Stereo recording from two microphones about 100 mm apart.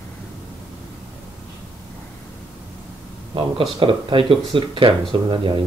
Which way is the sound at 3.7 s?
60° right (ahead or behind).